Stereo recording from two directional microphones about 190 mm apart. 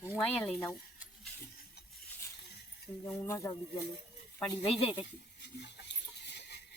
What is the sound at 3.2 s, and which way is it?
Speech, 15° left (ahead or behind).